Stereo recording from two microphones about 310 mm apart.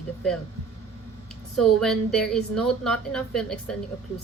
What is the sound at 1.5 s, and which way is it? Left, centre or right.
A woman's voice, centre.